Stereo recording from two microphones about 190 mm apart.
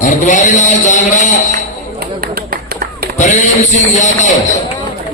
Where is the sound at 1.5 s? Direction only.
50° right (ahead or behind).